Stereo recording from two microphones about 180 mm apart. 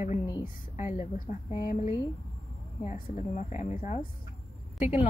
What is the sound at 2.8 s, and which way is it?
Speech, 40° left (ahead or behind).